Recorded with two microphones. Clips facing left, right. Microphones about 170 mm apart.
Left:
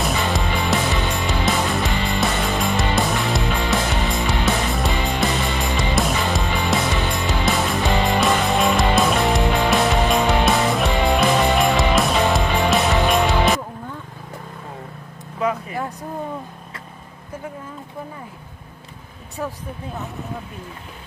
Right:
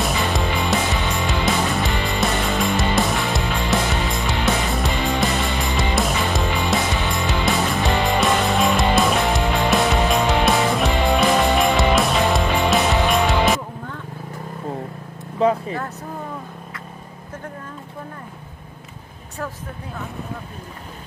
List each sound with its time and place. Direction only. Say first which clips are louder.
0.2 s music: even; centre (ahead or behind)
15.4 s vehicle: right 5 dB; 30° right (ahead or behind)
15.7 s vehicle: even; 10° left (ahead or behind)